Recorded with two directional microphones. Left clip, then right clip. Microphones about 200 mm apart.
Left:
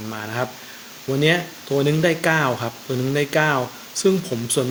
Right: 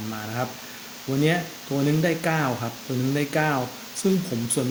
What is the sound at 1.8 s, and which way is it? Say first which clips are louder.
Speech: left 4 dB; 15° left (ahead or behind).